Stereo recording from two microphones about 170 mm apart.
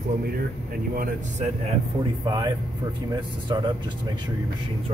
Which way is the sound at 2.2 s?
25° right (ahead or behind).